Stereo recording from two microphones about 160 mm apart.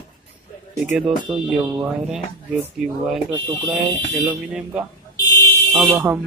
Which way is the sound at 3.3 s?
30° right (ahead or behind).